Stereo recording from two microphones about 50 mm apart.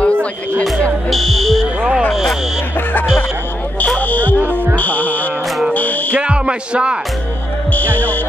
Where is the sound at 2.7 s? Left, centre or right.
Left.